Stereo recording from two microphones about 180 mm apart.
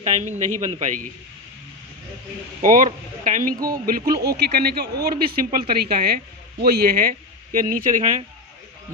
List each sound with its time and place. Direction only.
0.0 s a man's voice: 40° right (ahead or behind)
2.6 s speech: 50° right (ahead or behind)
3.8 s speech: 60° right (ahead or behind)